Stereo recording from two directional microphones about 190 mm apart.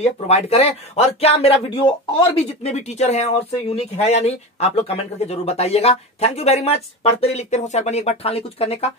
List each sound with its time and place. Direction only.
0.0 s speech: 35° left (ahead or behind)